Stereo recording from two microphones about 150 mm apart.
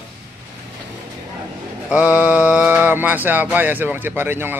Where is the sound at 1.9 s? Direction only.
10° right (ahead or behind).